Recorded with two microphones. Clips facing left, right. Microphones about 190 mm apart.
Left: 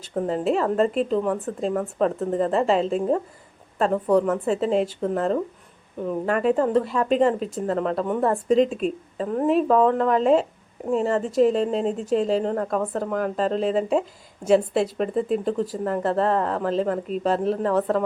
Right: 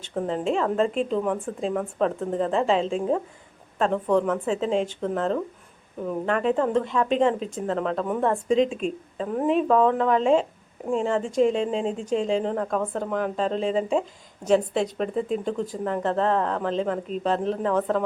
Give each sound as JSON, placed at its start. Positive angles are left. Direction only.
{"t": 0.0, "sound": "a woman's voice", "side_deg": 5}